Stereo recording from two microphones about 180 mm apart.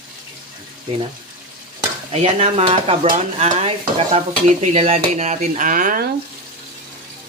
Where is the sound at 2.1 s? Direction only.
35° right (ahead or behind); by 6.1 s 50° right (ahead or behind).